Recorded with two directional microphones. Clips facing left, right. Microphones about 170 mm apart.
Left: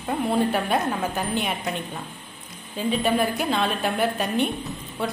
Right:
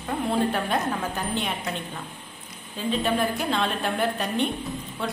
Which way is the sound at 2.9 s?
10° left (ahead or behind).